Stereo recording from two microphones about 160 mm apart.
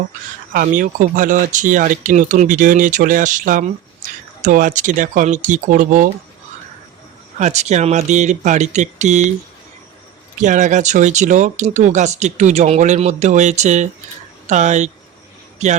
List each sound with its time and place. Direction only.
0.5 s speech: 60° right (ahead or behind)
7.3 s speech: 45° right (ahead or behind)
10.4 s speech: 50° right (ahead or behind)